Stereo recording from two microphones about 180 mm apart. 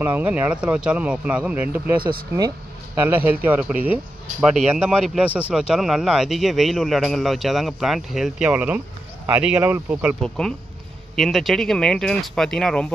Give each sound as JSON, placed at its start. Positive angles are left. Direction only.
{"t": 0.0, "sound": "speech", "side_deg": -10}
{"t": 2.0, "sound": "speech", "side_deg": -55}
{"t": 3.0, "sound": "a man's voice", "side_deg": -10}
{"t": 10.2, "sound": "a man's voice", "side_deg": 5}